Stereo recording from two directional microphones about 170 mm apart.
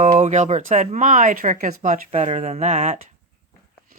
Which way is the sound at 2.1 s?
40° right (ahead or behind).